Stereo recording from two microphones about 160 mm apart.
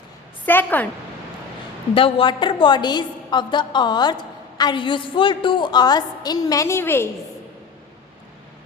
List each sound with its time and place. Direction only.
0.4 s a woman's voice: 10° left (ahead or behind)
2.0 s a woman's voice: 35° left (ahead or behind); by 7.1 s 15° left (ahead or behind)